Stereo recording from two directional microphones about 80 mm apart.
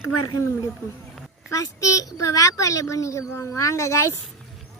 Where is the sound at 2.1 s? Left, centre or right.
Left.